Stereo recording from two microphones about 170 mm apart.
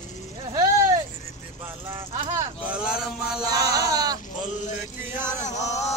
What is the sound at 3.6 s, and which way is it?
Speech, 25° right (ahead or behind).